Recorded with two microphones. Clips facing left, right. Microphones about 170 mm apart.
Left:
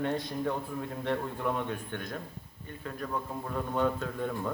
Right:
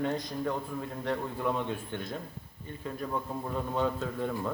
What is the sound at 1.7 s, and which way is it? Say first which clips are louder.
A man's voice: right 1 dB; 10° right (ahead or behind).